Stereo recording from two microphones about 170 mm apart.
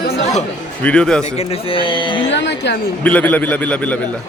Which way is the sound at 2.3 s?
90° left.